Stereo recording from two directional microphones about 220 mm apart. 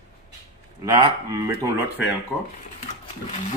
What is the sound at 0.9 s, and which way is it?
Speech, 20° right (ahead or behind).